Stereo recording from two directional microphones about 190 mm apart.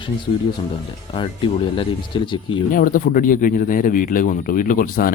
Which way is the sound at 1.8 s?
25° left (ahead or behind).